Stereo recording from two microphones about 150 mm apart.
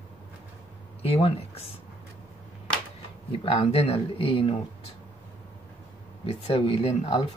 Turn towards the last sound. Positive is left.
turn(degrees=40)  # may be behind; listen again after turning